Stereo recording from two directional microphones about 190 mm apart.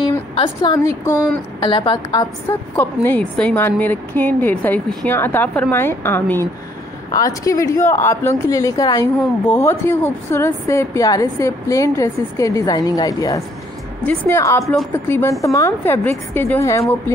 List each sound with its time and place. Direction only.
0.4 s a woman's voice: 20° left (ahead or behind)
1.6 s a woman's voice: 25° left (ahead or behind)
2.7 s a woman's voice: 10° left (ahead or behind)
14.6 s speech: centre (ahead or behind)
14.9 s a woman's voice: 10° left (ahead or behind)